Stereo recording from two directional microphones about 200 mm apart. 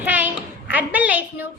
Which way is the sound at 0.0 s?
10° right (ahead or behind).